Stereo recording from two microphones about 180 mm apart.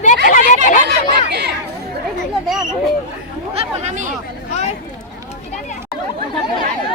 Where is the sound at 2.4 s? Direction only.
Centre (ahead or behind).